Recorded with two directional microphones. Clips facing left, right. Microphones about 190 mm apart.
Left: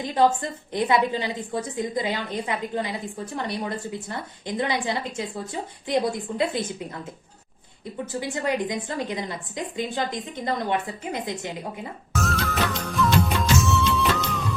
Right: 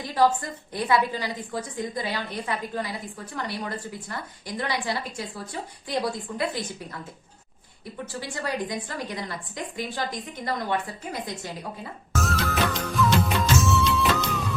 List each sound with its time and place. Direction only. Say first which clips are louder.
0.0 s a woman's voice: left 2 dB; 20° left (ahead or behind)
8.0 s a woman's voice: left 5 dB; 20° left (ahead or behind)
12.1 s music: even; centre (ahead or behind)